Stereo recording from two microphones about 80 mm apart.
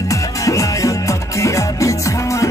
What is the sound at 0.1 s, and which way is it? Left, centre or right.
Music, left.